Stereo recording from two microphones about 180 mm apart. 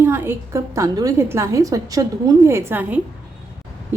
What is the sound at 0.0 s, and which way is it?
A woman's voice, 10° right (ahead or behind).